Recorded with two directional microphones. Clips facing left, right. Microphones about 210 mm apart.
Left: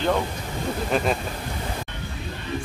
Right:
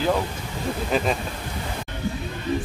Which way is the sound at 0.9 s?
5° right (ahead or behind).